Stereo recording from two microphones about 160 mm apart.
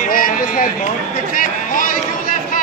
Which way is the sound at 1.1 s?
55° left (ahead or behind).